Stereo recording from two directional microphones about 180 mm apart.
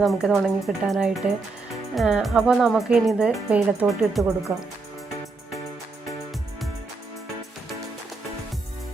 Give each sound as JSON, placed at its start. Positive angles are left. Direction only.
{"t": 0.0, "sound": "speech", "side_deg": 0}
{"t": 4.2, "sound": "speech", "side_deg": -15}